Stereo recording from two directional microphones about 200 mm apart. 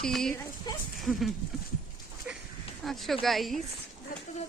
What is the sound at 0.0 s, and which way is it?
Speech, 5° left (ahead or behind).